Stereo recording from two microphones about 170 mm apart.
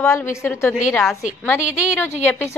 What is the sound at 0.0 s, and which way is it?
Speech, 15° left (ahead or behind).